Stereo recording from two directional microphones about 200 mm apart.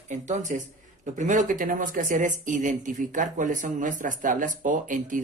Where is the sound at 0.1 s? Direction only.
35° right (ahead or behind).